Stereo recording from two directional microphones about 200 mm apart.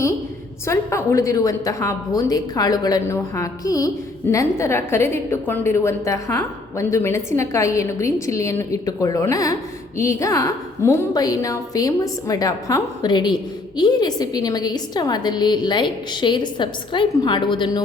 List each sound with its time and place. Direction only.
0.7 s a woman's voice: 15° left (ahead or behind)